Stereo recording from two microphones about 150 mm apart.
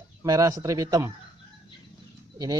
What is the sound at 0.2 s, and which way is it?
Speech, 20° right (ahead or behind).